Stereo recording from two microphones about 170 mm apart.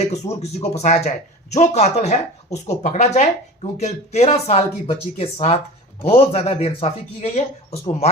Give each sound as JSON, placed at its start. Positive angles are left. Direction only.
{"t": 0.1, "sound": "speech", "side_deg": 40}